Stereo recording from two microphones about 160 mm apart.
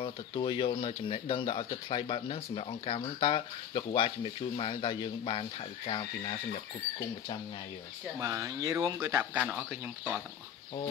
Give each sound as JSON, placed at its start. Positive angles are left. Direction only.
{"t": 0.0, "sound": "speech", "side_deg": 30}
{"t": 8.2, "sound": "speech", "side_deg": -20}